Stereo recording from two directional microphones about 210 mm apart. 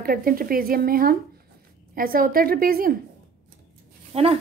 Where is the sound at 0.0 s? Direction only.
45° right (ahead or behind).